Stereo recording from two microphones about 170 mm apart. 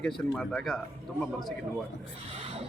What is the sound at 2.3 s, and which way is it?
Speech, 35° right (ahead or behind).